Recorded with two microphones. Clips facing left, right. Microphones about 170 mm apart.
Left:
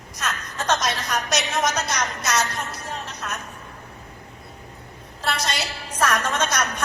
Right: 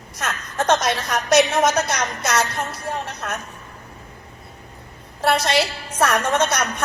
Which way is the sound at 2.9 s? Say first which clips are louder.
Right 4 dB; 55° right (ahead or behind).